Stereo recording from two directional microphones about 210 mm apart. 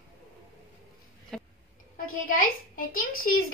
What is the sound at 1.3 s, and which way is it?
Cough, centre (ahead or behind).